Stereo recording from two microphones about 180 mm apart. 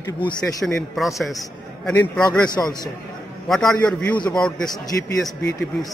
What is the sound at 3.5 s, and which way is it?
A man's voice, centre (ahead or behind).